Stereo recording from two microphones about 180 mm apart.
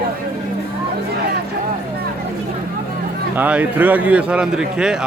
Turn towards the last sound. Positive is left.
turn(degrees=-5)  # may be behind; listen again after turning